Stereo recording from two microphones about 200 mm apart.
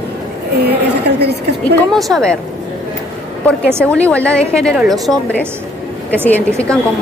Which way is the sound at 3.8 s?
5° left (ahead or behind).